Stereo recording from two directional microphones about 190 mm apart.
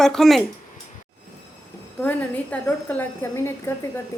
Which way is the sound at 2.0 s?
10° left (ahead or behind).